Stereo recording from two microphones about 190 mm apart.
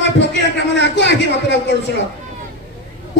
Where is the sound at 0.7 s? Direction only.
65° left (ahead or behind).